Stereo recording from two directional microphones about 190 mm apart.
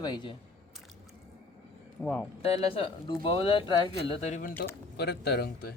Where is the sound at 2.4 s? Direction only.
30° left (ahead or behind).